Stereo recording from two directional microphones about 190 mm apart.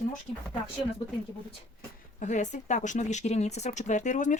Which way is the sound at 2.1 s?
40° left (ahead or behind).